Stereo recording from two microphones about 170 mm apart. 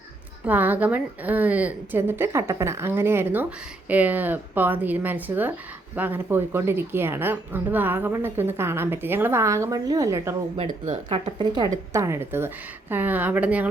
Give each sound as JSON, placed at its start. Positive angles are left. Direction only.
{"t": 0.4, "sound": "a woman's voice", "side_deg": -10}
{"t": 10.6, "sound": "a woman's voice", "side_deg": -35}